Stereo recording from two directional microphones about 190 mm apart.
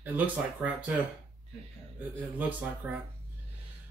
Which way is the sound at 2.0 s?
10° right (ahead or behind).